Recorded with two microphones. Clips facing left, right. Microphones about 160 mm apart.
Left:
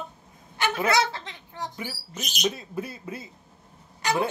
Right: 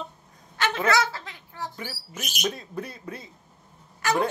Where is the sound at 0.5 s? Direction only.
10° left (ahead or behind).